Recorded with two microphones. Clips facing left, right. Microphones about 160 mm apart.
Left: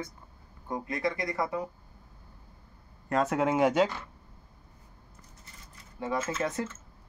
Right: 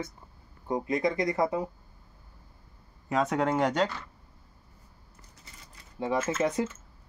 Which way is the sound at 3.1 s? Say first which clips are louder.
Even; centre (ahead or behind).